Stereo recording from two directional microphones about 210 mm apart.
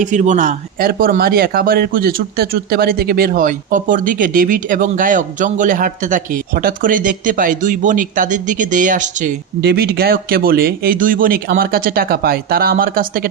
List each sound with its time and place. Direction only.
0.0 s speech: 35° right (ahead or behind)
9.6 s speech: 50° right (ahead or behind)